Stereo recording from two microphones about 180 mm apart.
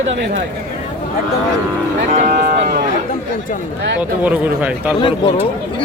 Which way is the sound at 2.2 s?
45° right (ahead or behind).